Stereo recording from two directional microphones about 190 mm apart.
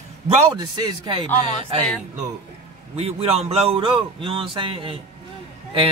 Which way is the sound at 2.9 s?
30° right (ahead or behind).